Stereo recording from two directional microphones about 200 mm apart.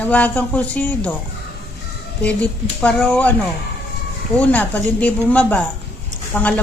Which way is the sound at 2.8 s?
5° left (ahead or behind).